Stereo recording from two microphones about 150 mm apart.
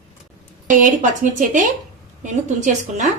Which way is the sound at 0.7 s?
60° right (ahead or behind).